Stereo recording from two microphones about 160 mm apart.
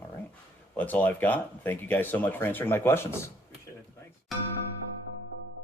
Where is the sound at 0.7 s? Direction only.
10° left (ahead or behind).